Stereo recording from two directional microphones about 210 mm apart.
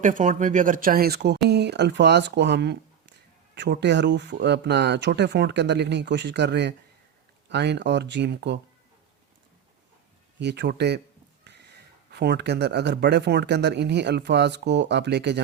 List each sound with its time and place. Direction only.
0.0 s speech: 40° right (ahead or behind); by 8.5 s 55° right (ahead or behind)
10.4 s speech: 55° right (ahead or behind)
12.1 s speech: 50° right (ahead or behind)